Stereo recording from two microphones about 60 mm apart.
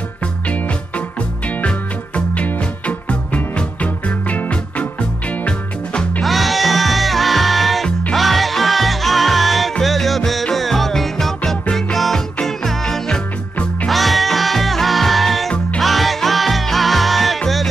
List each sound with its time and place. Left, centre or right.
1.6 s music: left
6.2 s music: centre